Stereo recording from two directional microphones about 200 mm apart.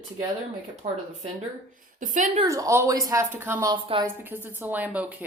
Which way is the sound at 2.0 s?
40° right (ahead or behind).